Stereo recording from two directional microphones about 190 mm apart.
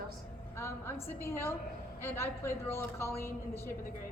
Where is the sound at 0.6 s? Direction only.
15° left (ahead or behind).